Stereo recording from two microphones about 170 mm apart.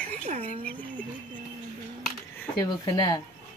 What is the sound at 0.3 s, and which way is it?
Speech, 45° right (ahead or behind).